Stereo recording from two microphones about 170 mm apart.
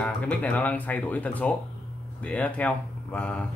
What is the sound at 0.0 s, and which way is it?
Speech, 5° left (ahead or behind).